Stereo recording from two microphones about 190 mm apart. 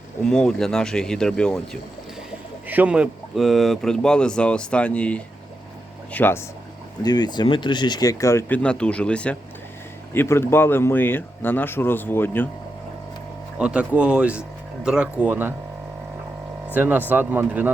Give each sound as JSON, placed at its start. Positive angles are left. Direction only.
{"t": 0.3, "sound": "speech", "side_deg": 5}
{"t": 2.6, "sound": "speech", "side_deg": -10}
{"t": 7.0, "sound": "speech", "side_deg": 20}
{"t": 13.6, "sound": "speech", "side_deg": -5}
{"t": 16.7, "sound": "speech", "side_deg": -10}